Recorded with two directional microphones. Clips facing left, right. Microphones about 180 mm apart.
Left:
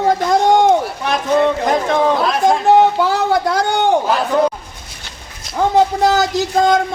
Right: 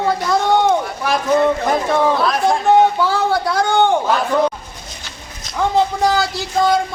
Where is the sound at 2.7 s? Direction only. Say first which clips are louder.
Even; 40° left (ahead or behind).